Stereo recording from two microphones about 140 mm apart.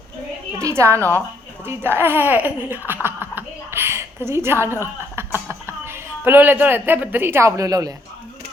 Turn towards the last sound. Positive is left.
turn(degrees=-25)  # may be behind; listen again after turning